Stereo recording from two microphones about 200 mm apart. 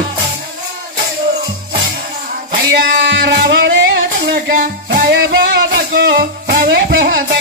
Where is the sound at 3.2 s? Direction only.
60° right (ahead or behind).